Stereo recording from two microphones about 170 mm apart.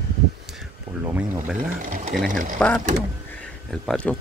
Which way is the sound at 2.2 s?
55° right (ahead or behind).